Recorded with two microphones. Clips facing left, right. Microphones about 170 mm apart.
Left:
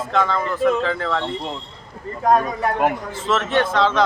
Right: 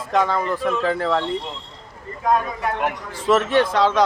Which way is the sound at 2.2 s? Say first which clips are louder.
Left 3 dB; 40° left (ahead or behind).